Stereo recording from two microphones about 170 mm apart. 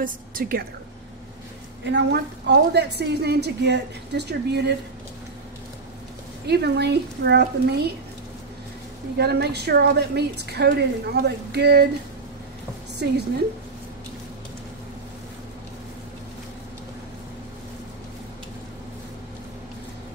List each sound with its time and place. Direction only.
0.0 s a woman's voice: 55° right (ahead or behind)
1.9 s a woman's voice: 80° right
6.4 s a woman's voice: 75° right (ahead or behind)
9.2 s a woman's voice: 75° right (ahead or behind)
13.0 s a woman's voice: 75° right (ahead or behind)